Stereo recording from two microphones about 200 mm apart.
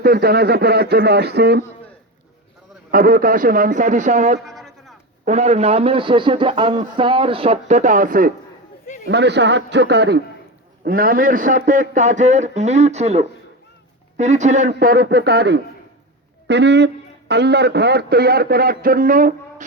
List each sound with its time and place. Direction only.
0.0 s a man's voice: 50° right (ahead or behind)
2.9 s a man's voice: 45° right (ahead or behind)
4.4 s music: centre (ahead or behind)
5.2 s speech: 35° right (ahead or behind)
9.0 s a man's voice: 60° right (ahead or behind)
10.8 s a man's voice: 45° right (ahead or behind)